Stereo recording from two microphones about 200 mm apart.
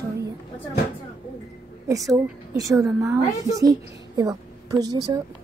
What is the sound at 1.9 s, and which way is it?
A woman's voice, 15° right (ahead or behind).